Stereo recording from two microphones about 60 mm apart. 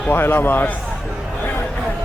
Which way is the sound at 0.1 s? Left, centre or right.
Left.